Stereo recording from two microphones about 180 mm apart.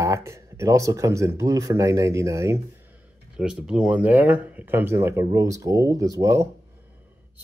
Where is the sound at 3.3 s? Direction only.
5° right (ahead or behind).